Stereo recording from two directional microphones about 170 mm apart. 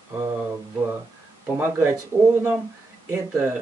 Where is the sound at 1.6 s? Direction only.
15° right (ahead or behind).